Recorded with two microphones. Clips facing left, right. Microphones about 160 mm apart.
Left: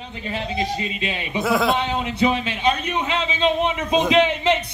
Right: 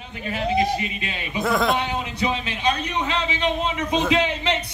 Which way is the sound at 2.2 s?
25° left (ahead or behind).